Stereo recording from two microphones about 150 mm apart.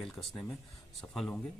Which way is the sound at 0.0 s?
Centre (ahead or behind).